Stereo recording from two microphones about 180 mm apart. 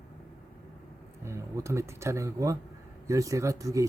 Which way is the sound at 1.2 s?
15° right (ahead or behind).